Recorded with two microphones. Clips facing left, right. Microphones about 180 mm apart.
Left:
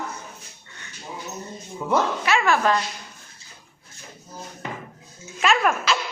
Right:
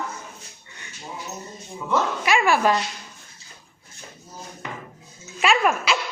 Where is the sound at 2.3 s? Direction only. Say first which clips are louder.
Right 3 dB; 10° right (ahead or behind).